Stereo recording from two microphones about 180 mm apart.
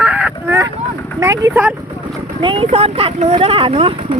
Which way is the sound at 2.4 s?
30° right (ahead or behind).